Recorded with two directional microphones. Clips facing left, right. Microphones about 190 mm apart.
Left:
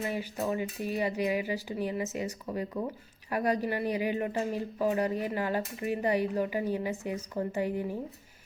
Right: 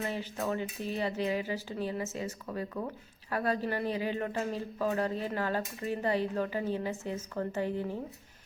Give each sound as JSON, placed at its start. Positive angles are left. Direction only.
{"t": 0.0, "sound": "speech", "side_deg": 10}